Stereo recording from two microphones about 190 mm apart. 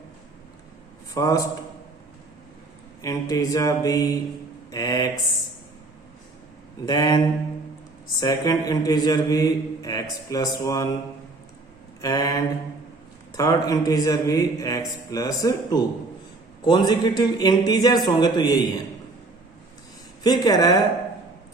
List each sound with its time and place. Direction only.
1.1 s a man's voice: 15° left (ahead or behind)
3.0 s a man's voice: 20° left (ahead or behind)
6.8 s a man's voice: 20° left (ahead or behind)
8.2 s a man's voice: 20° left (ahead or behind)
12.0 s a man's voice: 20° left (ahead or behind)
20.2 s a man's voice: 20° left (ahead or behind)